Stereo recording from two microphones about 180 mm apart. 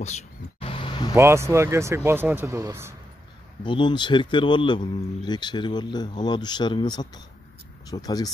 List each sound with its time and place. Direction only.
0.0 s a sound: 35° left (ahead or behind)
1.1 s speech: 15° right (ahead or behind)
3.6 s a man's voice: 25° left (ahead or behind)